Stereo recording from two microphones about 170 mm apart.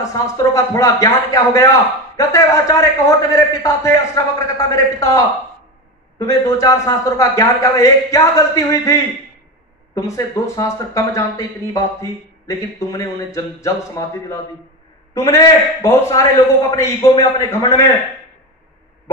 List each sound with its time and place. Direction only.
0.0 s a man's voice: 20° left (ahead or behind)